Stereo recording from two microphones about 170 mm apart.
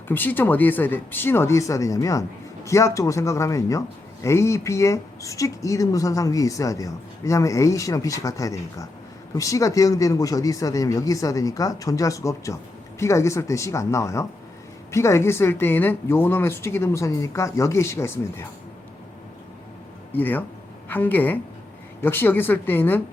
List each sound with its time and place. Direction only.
0.1 s speech: 10° left (ahead or behind)
20.1 s speech: 10° left (ahead or behind)